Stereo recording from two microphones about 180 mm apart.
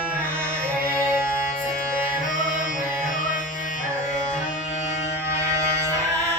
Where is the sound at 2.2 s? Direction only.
45° left (ahead or behind).